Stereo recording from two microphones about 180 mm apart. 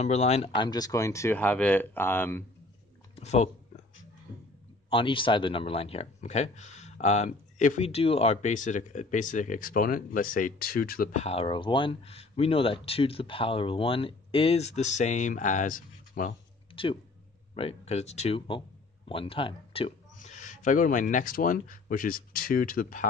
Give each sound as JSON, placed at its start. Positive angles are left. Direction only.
{"t": 0.0, "sound": "speech", "side_deg": 35}
{"t": 0.7, "sound": "speech", "side_deg": 20}
{"t": 3.2, "sound": "speech", "side_deg": 35}
{"t": 4.8, "sound": "speech", "side_deg": 30}
{"t": 16.7, "sound": "speech", "side_deg": 30}
{"t": 20.2, "sound": "speech", "side_deg": 45}